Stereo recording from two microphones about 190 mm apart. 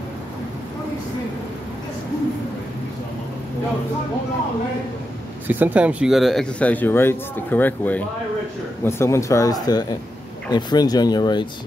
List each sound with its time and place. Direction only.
5.5 s speech: 10° right (ahead or behind); by 11.4 s 20° left (ahead or behind)